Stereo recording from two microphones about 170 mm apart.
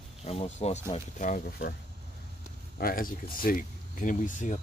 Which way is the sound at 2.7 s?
55° left (ahead or behind).